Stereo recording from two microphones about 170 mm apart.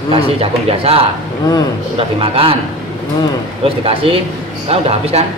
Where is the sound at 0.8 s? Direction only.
35° right (ahead or behind).